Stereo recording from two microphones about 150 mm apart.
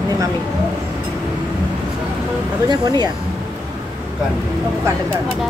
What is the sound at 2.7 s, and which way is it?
Speech, 30° right (ahead or behind).